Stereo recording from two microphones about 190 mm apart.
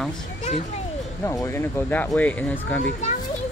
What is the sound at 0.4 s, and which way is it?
Speech, 35° left (ahead or behind).